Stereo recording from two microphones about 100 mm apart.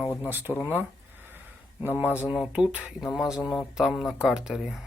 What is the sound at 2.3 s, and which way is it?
Speech, 5° right (ahead or behind).